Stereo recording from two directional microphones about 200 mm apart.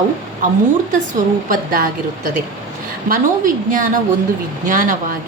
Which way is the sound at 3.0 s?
45° right (ahead or behind).